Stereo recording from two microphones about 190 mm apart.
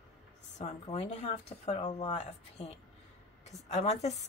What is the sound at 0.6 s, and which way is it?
Speech, 35° left (ahead or behind).